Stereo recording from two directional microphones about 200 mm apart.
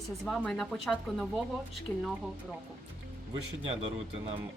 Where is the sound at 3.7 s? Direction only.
30° right (ahead or behind).